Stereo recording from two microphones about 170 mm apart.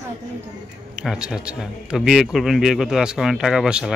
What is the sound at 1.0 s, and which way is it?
Speech, 5° right (ahead or behind).